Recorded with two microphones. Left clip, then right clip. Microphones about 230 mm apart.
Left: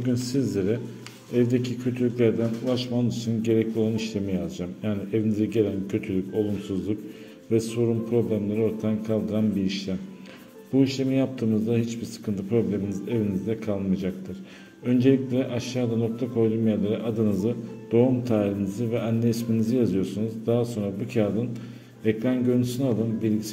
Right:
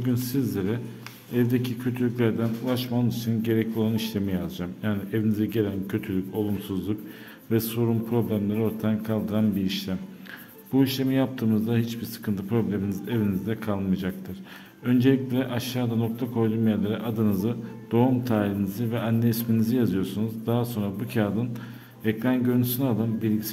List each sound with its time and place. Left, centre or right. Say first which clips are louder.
0.0 s a man's voice: left 1 dB; centre
7.5 s a man's voice: left 2 dB; right